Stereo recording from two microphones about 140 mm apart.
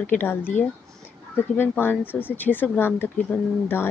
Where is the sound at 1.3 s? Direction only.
15° left (ahead or behind).